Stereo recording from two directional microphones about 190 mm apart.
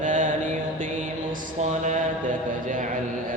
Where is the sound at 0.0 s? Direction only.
40° right (ahead or behind).